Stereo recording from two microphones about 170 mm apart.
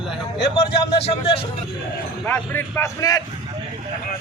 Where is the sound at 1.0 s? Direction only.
35° left (ahead or behind).